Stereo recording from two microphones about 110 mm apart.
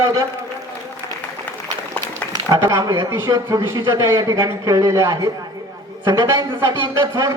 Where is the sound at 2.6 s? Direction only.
30° right (ahead or behind).